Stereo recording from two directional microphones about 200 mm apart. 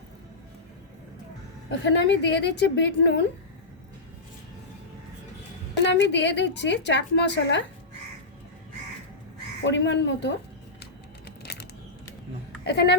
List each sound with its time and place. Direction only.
1.8 s a woman's voice: 60° left (ahead or behind)
5.7 s a woman's voice: 60° left (ahead or behind)
9.6 s a woman's voice: 60° left (ahead or behind)
12.6 s a woman's voice: 55° left (ahead or behind)